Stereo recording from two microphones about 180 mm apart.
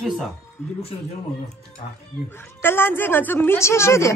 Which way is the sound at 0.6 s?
10° left (ahead or behind).